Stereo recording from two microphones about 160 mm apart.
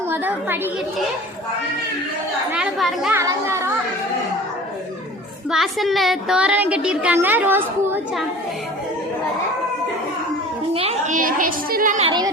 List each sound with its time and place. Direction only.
0.1 s a woman's voice: 10° right (ahead or behind)
2.5 s speech: centre (ahead or behind)
3.1 s speech: 15° right (ahead or behind)
5.5 s a woman's voice: centre (ahead or behind)
10.8 s a woman's voice: 45° right (ahead or behind)
12.0 s speech: 25° right (ahead or behind)